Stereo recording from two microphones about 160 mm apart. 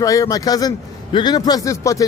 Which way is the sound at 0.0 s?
20° left (ahead or behind).